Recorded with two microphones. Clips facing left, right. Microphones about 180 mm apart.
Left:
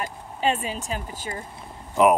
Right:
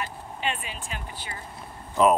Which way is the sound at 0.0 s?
40° left (ahead or behind).